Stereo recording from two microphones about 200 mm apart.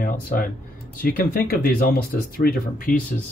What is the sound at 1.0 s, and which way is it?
Speech, 50° left (ahead or behind).